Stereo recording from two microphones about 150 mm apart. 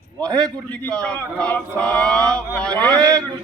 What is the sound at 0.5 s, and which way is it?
A man's voice, 10° left (ahead or behind).